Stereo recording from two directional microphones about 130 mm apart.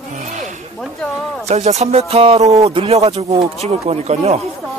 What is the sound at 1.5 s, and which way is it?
Music, 60° right (ahead or behind).